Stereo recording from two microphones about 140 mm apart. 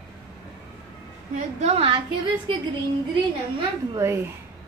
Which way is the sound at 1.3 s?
55° right (ahead or behind).